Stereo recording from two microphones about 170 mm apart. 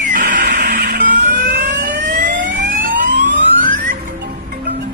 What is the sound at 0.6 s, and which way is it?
Fire alarm, 60° right (ahead or behind).